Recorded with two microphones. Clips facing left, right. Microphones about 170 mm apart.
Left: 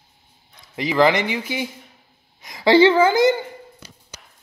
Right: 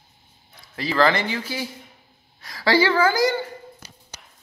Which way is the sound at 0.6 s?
20° left (ahead or behind).